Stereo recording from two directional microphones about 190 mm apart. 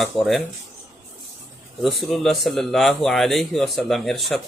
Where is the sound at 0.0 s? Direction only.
Centre (ahead or behind).